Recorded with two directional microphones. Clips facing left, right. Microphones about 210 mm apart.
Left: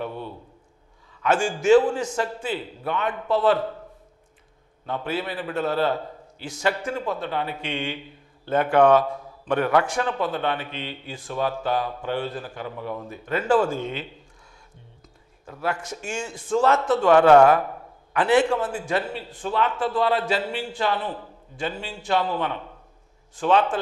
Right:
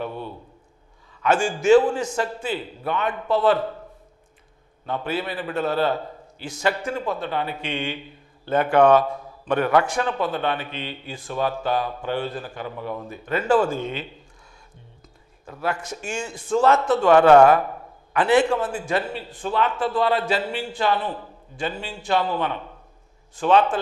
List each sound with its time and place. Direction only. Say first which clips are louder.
0.1 s a sound: right 1 dB; 35° right (ahead or behind)
1.2 s a man's voice: right 1 dB; 20° right (ahead or behind)
4.8 s a man's voice: right 1 dB; 15° right (ahead or behind)
13.3 s a man's voice: right 1 dB; 15° right (ahead or behind)
15.6 s a man's voice: right 1 dB; 15° right (ahead or behind)